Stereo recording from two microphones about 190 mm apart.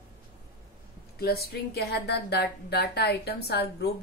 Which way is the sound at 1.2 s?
55° left (ahead or behind).